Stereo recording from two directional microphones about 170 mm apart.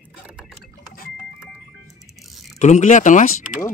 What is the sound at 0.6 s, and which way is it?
Vehicle, 60° left (ahead or behind).